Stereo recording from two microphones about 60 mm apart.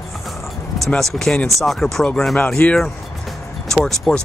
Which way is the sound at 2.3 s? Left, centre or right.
Left.